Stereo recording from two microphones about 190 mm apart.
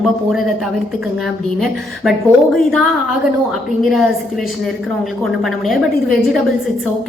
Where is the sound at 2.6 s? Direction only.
Centre (ahead or behind).